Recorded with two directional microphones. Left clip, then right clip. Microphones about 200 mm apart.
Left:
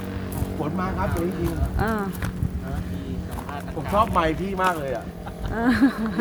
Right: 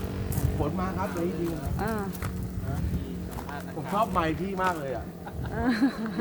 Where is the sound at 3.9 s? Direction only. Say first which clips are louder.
Left 6 dB; 15° left (ahead or behind).